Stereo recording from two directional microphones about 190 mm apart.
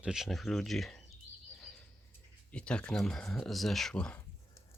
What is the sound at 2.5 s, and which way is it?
Speech, 5° left (ahead or behind).